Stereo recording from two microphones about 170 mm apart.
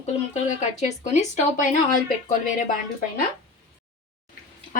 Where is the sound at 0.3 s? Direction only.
40° left (ahead or behind).